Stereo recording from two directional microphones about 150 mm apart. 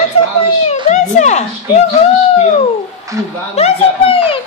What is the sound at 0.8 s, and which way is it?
Speech, 50° left (ahead or behind).